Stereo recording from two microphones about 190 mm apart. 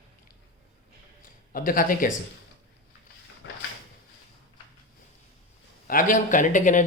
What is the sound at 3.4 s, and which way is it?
Drawer open or close, 80° left.